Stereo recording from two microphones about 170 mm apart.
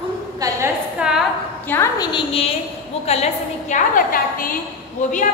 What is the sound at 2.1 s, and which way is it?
A woman's voice, 35° left (ahead or behind).